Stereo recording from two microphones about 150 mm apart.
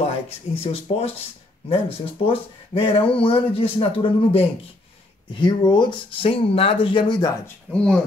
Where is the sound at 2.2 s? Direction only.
40° left (ahead or behind).